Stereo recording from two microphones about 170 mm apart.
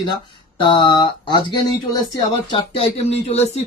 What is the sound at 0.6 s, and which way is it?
Speech, 30° left (ahead or behind).